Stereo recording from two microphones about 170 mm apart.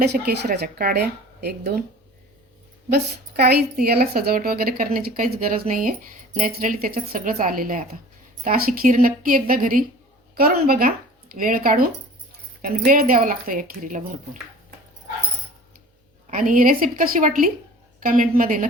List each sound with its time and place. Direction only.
0.3 s a woman's voice: 70° right (ahead or behind)
2.9 s a woman's voice: 70° right (ahead or behind); by 14.2 s 50° right (ahead or behind)
16.2 s speech: 50° right (ahead or behind)